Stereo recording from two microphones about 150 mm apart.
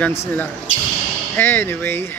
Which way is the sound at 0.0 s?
10° left (ahead or behind).